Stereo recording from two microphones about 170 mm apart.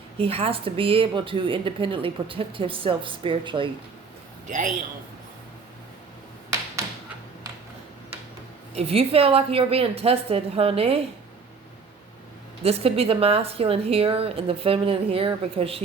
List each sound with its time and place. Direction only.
0.2 s speech: 35° right (ahead or behind)
4.4 s a man's voice: 50° right (ahead or behind)
8.7 s speech: 35° right (ahead or behind)
12.6 s speech: 35° right (ahead or behind)